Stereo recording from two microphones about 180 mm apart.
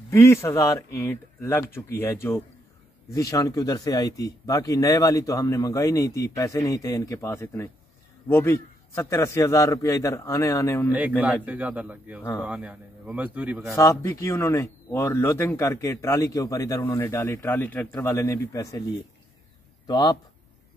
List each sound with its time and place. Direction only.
0.1 s speech: 15° left (ahead or behind)
10.9 s a man's voice: 10° right (ahead or behind)
12.2 s speech: 10° left (ahead or behind)
12.4 s a man's voice: 5° right (ahead or behind)
13.7 s speech: 15° left (ahead or behind)
19.9 s speech: 20° left (ahead or behind)